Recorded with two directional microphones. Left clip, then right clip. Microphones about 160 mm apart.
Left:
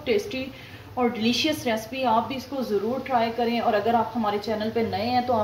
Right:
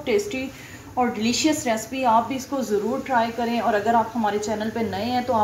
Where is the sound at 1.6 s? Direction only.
20° left (ahead or behind).